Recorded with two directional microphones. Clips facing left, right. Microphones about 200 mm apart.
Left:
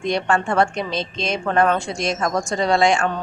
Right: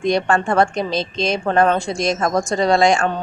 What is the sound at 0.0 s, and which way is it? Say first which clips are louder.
Speech: right 3 dB; 40° right (ahead or behind).